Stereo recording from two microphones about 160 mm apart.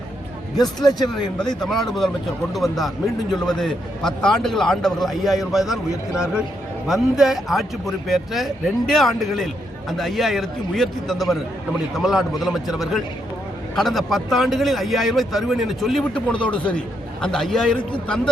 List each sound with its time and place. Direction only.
0.9 s a man's voice: 25° left (ahead or behind)
1.1 s a man's voice: 5° left (ahead or behind)